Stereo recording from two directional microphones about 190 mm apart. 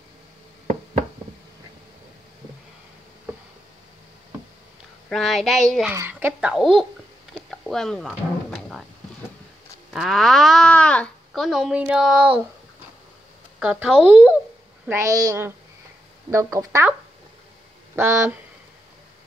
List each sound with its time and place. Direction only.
5.1 s speech: centre (ahead or behind)
5.9 s a child's voice: 10° right (ahead or behind)
7.3 s a sound: centre (ahead or behind)
9.9 s speech: centre (ahead or behind)
13.6 s a child's voice: 5° right (ahead or behind)
17.9 s a child's voice: 15° right (ahead or behind)